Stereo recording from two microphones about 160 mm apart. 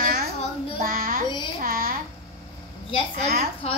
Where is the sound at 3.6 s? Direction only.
40° left (ahead or behind).